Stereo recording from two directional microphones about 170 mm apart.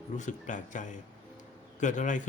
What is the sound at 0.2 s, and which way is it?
A man's voice, 45° left (ahead or behind).